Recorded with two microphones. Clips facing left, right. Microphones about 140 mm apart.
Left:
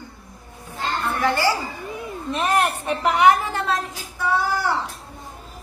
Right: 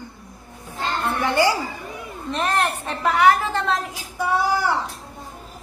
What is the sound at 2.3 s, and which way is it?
A woman's voice, 10° left (ahead or behind).